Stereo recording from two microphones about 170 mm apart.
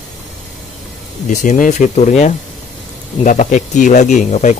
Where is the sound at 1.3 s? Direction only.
50° left (ahead or behind).